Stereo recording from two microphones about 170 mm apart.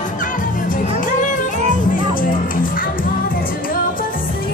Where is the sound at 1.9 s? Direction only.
55° left (ahead or behind).